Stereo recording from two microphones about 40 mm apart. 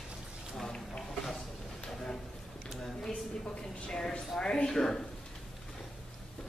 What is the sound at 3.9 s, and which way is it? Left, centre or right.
Speech, centre.